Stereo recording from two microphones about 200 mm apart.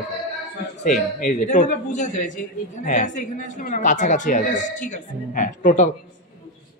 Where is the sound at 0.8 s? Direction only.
40° left (ahead or behind).